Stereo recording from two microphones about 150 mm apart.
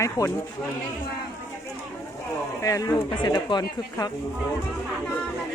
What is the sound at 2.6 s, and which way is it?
Speech, 25° left (ahead or behind).